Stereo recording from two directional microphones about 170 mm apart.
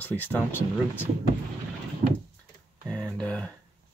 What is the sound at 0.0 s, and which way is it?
Speech, 10° left (ahead or behind).